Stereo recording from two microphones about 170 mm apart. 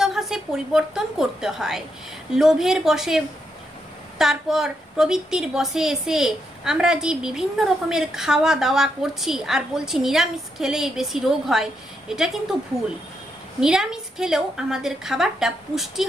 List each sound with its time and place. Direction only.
0.0 s a woman's voice: centre (ahead or behind)
13.6 s a woman's voice: 5° right (ahead or behind)